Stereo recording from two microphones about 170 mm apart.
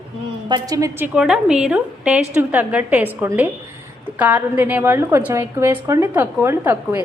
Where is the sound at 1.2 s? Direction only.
5° right (ahead or behind).